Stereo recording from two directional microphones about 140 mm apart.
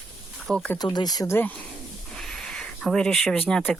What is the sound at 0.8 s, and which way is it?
Speech, 30° left (ahead or behind).